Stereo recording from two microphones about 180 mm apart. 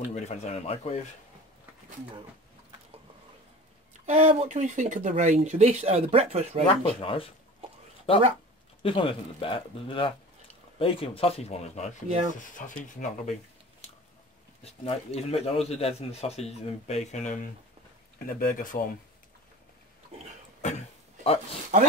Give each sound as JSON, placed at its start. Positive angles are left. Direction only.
{"t": 0.1, "sound": "speech", "side_deg": 40}
{"t": 4.0, "sound": "speech", "side_deg": -35}
{"t": 6.7, "sound": "speech", "side_deg": 30}
{"t": 14.6, "sound": "speech", "side_deg": 35}
{"t": 21.7, "sound": "speech", "side_deg": -45}